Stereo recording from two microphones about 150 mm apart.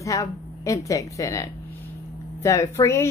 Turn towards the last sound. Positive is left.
turn(degrees=20)  # may be behind; listen again after turning